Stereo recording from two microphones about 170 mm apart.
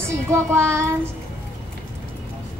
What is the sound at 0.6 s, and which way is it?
Child singing, 15° right (ahead or behind).